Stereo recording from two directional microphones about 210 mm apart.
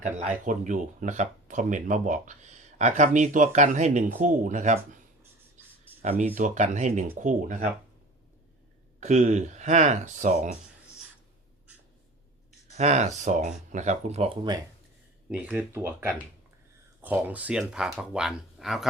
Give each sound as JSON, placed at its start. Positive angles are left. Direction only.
{"t": 0.0, "sound": "speech", "side_deg": -35}
{"t": 6.0, "sound": "speech", "side_deg": -40}
{"t": 9.0, "sound": "speech", "side_deg": -35}
{"t": 12.7, "sound": "speech", "side_deg": -30}
{"t": 15.3, "sound": "speech", "side_deg": -5}